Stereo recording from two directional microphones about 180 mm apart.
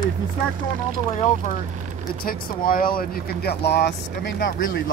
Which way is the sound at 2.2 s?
55° left (ahead or behind).